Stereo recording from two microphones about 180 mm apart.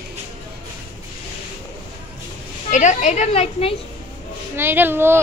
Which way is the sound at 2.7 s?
40° left (ahead or behind).